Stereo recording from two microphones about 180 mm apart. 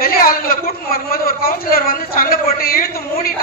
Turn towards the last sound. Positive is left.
turn(degrees=55)  # may be behind; listen again after turning